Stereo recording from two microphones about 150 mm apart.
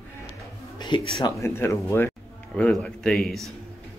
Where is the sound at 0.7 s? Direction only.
30° left (ahead or behind).